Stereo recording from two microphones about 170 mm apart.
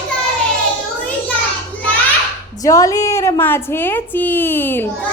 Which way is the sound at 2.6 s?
20° left (ahead or behind).